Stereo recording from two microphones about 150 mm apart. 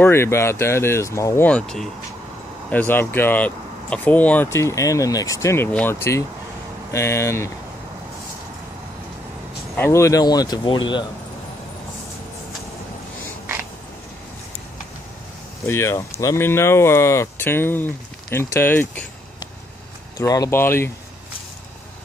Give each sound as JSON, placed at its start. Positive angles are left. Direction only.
{"t": 0.0, "sound": "speech", "side_deg": 15}
{"t": 9.8, "sound": "speech", "side_deg": 20}
{"t": 15.6, "sound": "speech", "side_deg": 15}
{"t": 20.2, "sound": "speech", "side_deg": 25}